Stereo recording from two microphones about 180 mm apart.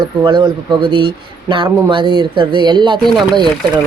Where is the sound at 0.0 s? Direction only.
25° right (ahead or behind).